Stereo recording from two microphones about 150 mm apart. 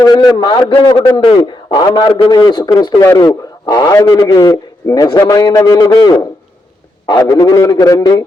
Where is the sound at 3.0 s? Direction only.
15° left (ahead or behind).